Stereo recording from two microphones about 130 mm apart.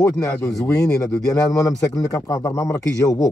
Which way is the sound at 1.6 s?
25° left (ahead or behind).